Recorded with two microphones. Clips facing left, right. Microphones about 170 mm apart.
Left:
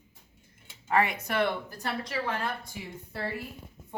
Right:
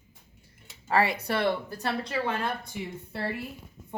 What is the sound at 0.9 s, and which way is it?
Speech, 35° right (ahead or behind).